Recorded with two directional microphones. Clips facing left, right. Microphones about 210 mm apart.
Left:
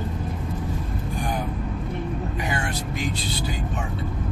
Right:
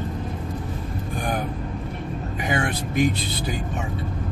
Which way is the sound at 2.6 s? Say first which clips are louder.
Right 6 dB; 55° right (ahead or behind).